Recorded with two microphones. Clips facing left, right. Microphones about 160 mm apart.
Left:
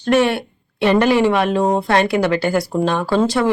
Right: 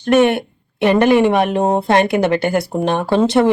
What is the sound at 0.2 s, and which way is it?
A woman's voice, 20° right (ahead or behind).